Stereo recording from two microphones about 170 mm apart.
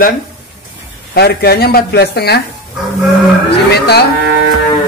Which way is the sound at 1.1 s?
70° left (ahead or behind).